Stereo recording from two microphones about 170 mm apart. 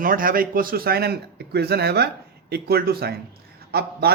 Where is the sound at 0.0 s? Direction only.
55° right (ahead or behind).